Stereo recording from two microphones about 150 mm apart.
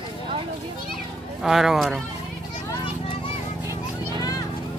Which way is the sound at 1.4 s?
5° right (ahead or behind).